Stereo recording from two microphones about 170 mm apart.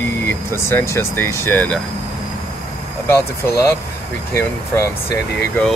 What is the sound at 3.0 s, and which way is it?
Speech, 15° left (ahead or behind).